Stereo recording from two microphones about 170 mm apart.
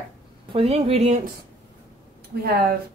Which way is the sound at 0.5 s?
35° right (ahead or behind).